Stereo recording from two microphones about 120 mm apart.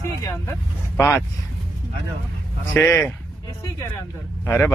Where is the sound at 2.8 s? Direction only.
25° left (ahead or behind).